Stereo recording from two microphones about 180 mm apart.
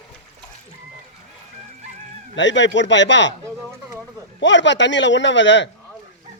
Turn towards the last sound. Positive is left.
turn(degrees=90)